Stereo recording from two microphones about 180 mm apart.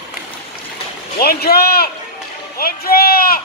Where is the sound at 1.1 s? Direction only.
60° left (ahead or behind).